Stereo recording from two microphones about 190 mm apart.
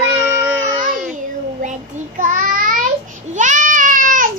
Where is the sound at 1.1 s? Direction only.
40° right (ahead or behind).